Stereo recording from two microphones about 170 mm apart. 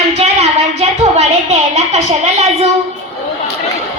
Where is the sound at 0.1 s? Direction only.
40° right (ahead or behind).